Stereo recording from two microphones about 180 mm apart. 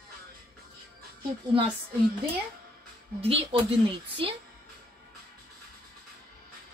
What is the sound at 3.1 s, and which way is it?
Speech, 35° right (ahead or behind).